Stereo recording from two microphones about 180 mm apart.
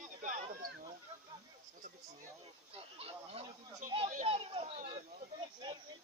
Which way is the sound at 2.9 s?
35° right (ahead or behind).